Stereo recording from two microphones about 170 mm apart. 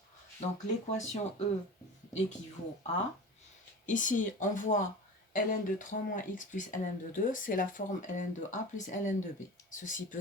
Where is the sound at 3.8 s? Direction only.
50° left (ahead or behind).